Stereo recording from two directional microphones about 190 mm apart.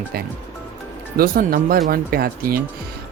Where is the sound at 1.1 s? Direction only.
50° right (ahead or behind).